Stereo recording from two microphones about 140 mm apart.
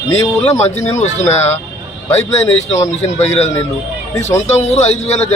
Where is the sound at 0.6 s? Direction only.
55° left (ahead or behind).